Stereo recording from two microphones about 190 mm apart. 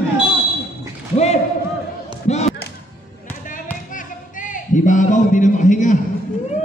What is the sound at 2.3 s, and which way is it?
Basketball bounce, 35° left (ahead or behind).